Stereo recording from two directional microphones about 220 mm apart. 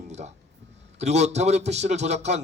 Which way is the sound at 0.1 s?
30° right (ahead or behind).